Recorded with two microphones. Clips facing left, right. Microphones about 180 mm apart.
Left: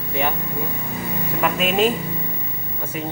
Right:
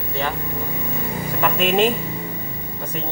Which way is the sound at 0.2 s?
15° left (ahead or behind).